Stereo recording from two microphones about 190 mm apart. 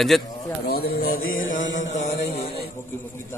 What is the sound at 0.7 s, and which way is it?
Speech, 55° left (ahead or behind).